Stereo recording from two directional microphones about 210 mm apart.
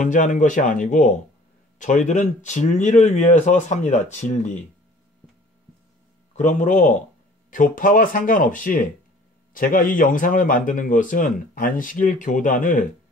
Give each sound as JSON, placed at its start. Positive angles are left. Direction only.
{"t": 0.0, "sound": "a man's voice", "side_deg": 35}
{"t": 6.3, "sound": "a man's voice", "side_deg": 35}